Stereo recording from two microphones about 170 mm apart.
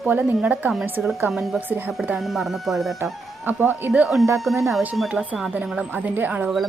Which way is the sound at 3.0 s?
10° right (ahead or behind).